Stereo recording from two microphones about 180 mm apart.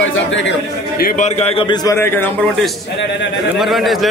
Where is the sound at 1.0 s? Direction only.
55° left (ahead or behind).